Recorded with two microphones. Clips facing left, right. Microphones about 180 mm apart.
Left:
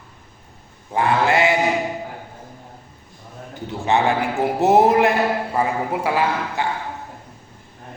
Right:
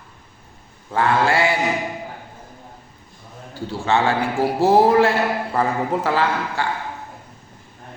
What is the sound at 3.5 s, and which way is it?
A man's voice, 20° left (ahead or behind).